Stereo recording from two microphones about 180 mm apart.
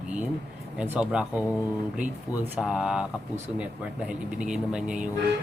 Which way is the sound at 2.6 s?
5° right (ahead or behind).